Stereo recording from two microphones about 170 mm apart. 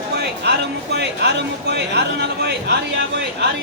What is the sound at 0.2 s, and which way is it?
Speech, 75° right (ahead or behind).